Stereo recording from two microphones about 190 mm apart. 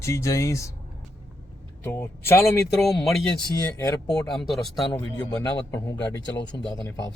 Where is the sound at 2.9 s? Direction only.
Centre (ahead or behind).